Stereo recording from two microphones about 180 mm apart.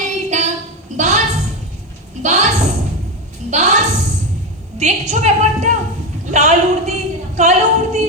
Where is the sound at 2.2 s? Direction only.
40° right (ahead or behind).